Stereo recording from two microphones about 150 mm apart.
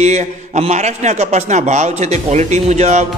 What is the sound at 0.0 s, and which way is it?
A man's voice, 50° right (ahead or behind).